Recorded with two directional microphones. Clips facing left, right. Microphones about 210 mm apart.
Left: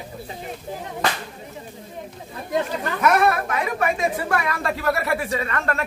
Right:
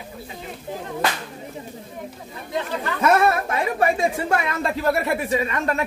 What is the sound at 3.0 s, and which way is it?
Speech, 25° right (ahead or behind).